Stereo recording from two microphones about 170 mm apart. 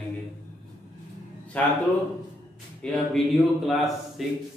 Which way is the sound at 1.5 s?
10° left (ahead or behind).